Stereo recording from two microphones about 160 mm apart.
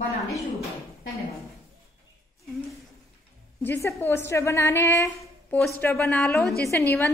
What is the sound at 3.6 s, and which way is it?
A woman's voice, 15° left (ahead or behind).